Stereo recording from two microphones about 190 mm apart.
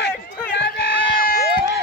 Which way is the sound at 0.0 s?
60° left (ahead or behind).